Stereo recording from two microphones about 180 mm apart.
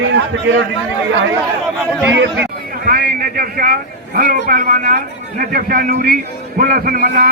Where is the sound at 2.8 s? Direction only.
55° right (ahead or behind).